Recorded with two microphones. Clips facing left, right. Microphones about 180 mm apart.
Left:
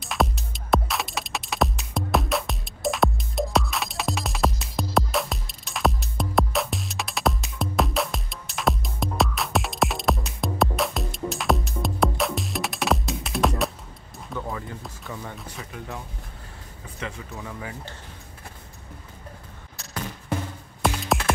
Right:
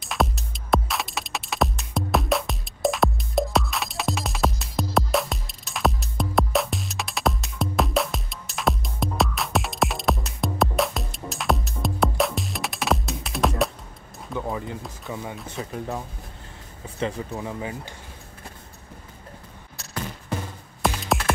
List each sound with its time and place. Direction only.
0.0 s music: centre (ahead or behind)
14.3 s music: 20° right (ahead or behind)
15.6 s speech: 30° right (ahead or behind)
17.0 s speech: 25° right (ahead or behind)